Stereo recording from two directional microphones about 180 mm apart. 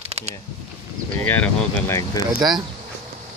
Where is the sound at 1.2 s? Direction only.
10° left (ahead or behind).